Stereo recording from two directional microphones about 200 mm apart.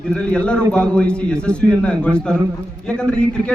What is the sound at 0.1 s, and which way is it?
Speech, 5° left (ahead or behind).